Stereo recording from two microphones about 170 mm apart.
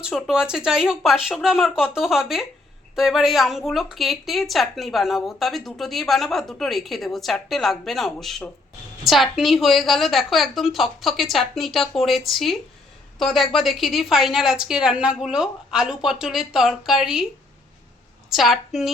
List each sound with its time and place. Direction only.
0.0 s a woman's voice: 5° right (ahead or behind)
18.3 s a woman's voice: centre (ahead or behind)